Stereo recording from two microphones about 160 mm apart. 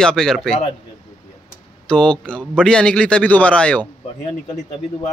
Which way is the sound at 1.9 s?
5° left (ahead or behind).